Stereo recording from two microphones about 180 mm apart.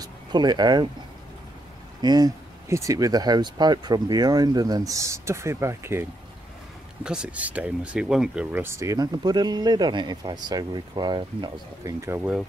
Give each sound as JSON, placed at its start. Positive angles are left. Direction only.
{"t": 0.0, "sound": "speech", "side_deg": -25}
{"t": 2.0, "sound": "speech", "side_deg": -20}